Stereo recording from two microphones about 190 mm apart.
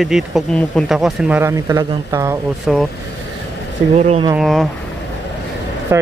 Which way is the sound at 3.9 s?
35° right (ahead or behind).